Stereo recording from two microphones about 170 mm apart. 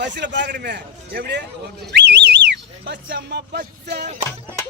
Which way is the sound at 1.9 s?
85° right.